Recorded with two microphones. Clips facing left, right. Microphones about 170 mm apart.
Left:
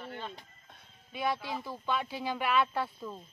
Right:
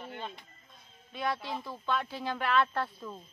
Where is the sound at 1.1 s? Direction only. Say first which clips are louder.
Left 1 dB; 5° left (ahead or behind).